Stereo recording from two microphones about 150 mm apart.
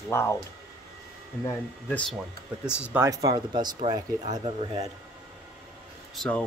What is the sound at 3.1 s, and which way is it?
Speech, 25° right (ahead or behind).